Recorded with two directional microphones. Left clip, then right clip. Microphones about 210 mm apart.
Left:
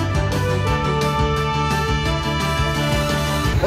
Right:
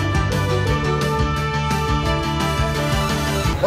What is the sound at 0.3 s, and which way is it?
Music, centre (ahead or behind).